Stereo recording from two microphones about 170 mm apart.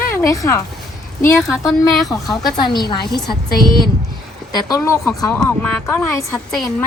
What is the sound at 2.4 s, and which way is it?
Speech, 25° left (ahead or behind).